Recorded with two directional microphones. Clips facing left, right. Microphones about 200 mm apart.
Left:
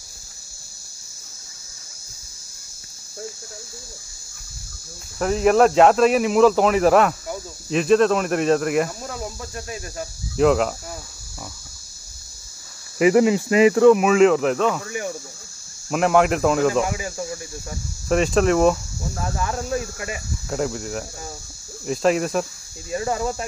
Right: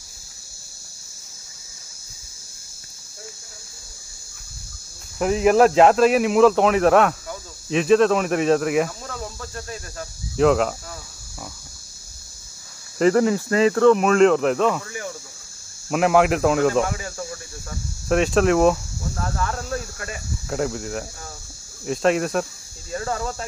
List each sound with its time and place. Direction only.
5.2 s speech: centre (ahead or behind)
9.0 s speech: 10° left (ahead or behind)
10.3 s speech: centre (ahead or behind)
13.0 s speech: 15° left (ahead or behind)
14.9 s speech: 20° left (ahead or behind)
15.9 s speech: centre (ahead or behind)
18.0 s speech: centre (ahead or behind)
19.1 s speech: 10° left (ahead or behind)
20.4 s speech: centre (ahead or behind)
22.8 s speech: 15° left (ahead or behind)